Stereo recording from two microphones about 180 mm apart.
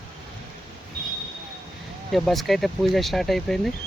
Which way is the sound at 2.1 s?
Centre (ahead or behind).